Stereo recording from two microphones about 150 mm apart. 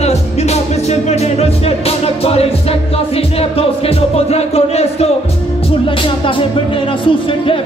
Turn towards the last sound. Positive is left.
turn(degrees=35)  # may be behind; listen again after turning